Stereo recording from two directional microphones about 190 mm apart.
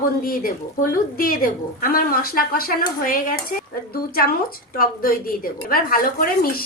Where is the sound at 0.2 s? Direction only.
50° left (ahead or behind).